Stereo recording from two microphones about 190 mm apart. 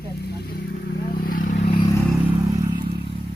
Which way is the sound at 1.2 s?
50° left (ahead or behind).